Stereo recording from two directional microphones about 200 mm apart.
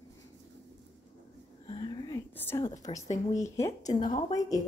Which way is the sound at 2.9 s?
30° left (ahead or behind).